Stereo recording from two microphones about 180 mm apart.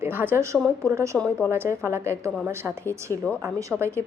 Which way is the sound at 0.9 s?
15° right (ahead or behind).